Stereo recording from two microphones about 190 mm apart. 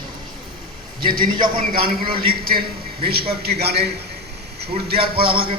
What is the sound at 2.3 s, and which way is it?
A man's voice, 55° right (ahead or behind).